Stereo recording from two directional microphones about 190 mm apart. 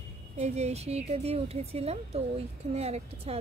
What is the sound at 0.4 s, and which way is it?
A woman's voice, 35° right (ahead or behind).